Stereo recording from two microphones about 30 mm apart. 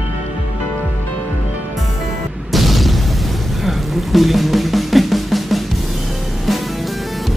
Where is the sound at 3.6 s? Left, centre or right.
Centre.